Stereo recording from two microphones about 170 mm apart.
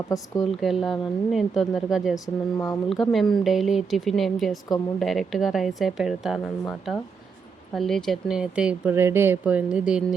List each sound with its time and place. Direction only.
0.6 s speech: centre (ahead or behind)
2.2 s speech: 20° left (ahead or behind)
2.9 s speech: centre (ahead or behind)